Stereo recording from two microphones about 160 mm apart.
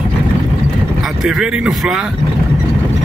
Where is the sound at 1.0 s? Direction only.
Centre (ahead or behind).